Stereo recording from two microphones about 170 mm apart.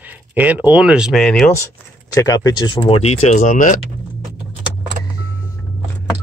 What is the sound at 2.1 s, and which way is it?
Speech, 20° left (ahead or behind).